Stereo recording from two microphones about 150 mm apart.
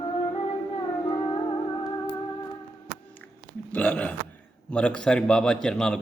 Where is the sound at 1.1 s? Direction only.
30° left (ahead or behind).